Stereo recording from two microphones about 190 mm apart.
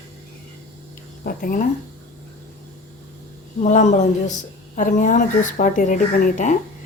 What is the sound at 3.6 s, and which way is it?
Speech, 40° left (ahead or behind).